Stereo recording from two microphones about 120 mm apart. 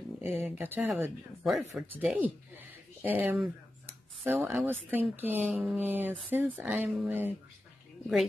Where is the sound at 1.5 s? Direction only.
Centre (ahead or behind).